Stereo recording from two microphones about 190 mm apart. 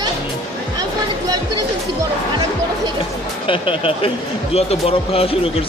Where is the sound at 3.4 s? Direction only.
30° left (ahead or behind).